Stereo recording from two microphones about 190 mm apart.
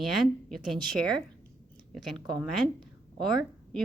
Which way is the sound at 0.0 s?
Centre (ahead or behind).